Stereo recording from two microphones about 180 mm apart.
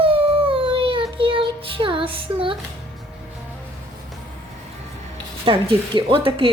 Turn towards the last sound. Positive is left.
turn(degrees=-30)  # may be behind; listen again after turning